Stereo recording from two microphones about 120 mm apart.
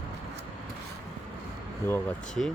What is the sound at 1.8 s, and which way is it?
Speech, 25° left (ahead or behind).